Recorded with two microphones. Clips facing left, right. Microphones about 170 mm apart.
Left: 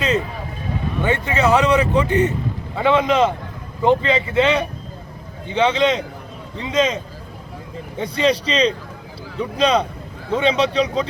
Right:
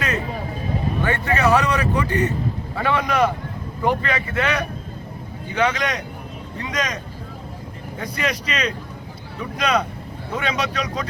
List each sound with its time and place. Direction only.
1.0 s speech: 20° left (ahead or behind)